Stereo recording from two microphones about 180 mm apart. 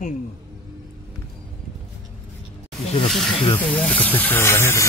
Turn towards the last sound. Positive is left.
turn(degrees=15)  # may be behind; listen again after turning